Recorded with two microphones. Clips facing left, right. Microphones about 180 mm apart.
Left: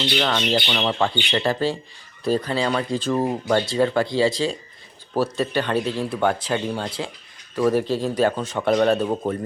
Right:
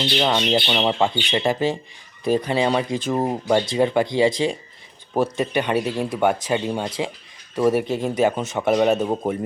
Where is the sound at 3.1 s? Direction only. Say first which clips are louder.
Right 1 dB; 25° right (ahead or behind).